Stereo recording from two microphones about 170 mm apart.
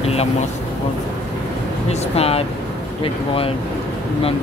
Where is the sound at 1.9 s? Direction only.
35° left (ahead or behind).